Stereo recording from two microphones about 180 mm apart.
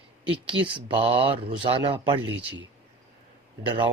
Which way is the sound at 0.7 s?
30° right (ahead or behind).